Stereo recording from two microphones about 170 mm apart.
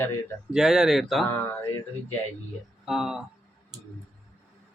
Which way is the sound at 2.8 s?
5° right (ahead or behind).